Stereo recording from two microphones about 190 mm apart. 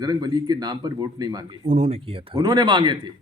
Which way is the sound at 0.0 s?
20° right (ahead or behind).